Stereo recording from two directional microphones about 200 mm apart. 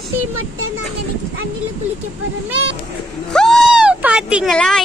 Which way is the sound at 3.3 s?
Centre (ahead or behind).